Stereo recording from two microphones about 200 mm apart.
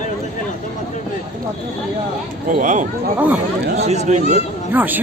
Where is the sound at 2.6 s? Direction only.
40° right (ahead or behind).